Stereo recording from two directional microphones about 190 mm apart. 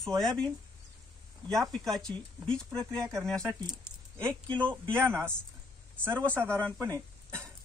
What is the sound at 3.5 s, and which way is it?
Speech, 20° right (ahead or behind).